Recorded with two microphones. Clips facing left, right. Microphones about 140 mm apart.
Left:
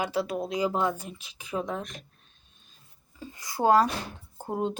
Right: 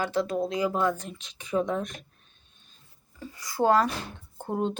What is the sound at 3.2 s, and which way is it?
Speech, 20° left (ahead or behind).